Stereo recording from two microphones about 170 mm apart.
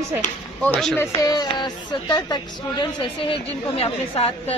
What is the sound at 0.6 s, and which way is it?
Speech, 5° left (ahead or behind).